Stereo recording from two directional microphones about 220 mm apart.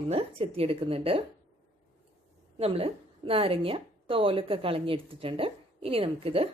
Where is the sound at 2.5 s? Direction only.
25° right (ahead or behind).